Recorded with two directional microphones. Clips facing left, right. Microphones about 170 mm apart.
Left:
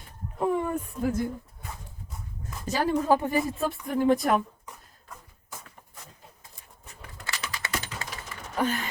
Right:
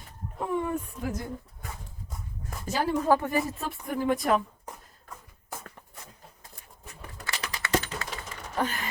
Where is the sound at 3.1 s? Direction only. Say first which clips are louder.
Right 1 dB; 20° left (ahead or behind).